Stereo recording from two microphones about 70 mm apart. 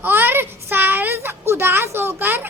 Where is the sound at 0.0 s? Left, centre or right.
Right.